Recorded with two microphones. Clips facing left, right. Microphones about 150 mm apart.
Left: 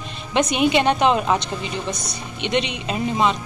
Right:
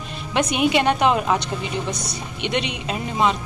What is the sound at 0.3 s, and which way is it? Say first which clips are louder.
A woman's voice: left 1 dB; 10° right (ahead or behind).